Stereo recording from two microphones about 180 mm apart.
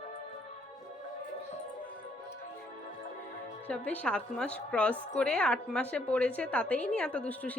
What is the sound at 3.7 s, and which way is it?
A woman's voice, 5° left (ahead or behind).